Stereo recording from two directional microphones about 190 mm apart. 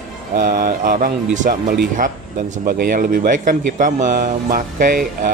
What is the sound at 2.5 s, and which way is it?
Speech, 50° right (ahead or behind).